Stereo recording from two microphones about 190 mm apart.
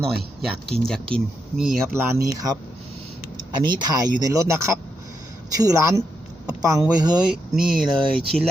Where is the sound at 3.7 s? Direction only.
20° right (ahead or behind).